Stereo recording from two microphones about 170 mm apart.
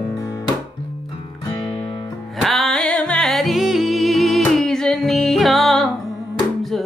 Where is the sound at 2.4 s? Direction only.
Centre (ahead or behind).